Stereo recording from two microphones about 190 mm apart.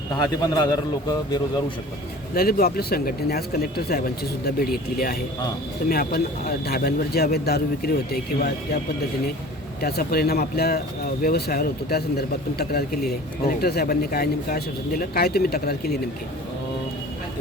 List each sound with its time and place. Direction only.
0.2 s a man's voice: 20° left (ahead or behind)
2.3 s speech: 50° left (ahead or behind)
5.9 s speech: 50° left (ahead or behind)
9.8 s speech: 55° left (ahead or behind)